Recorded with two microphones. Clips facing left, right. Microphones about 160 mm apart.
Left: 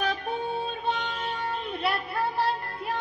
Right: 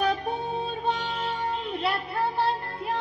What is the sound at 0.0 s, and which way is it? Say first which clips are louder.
Music: right 3 dB; 35° right (ahead or behind).